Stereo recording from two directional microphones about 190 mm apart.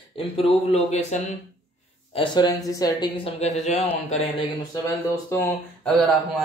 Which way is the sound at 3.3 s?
35° left (ahead or behind).